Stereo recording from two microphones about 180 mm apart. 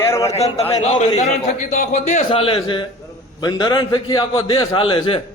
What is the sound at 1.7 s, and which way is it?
A man's voice, 40° left (ahead or behind).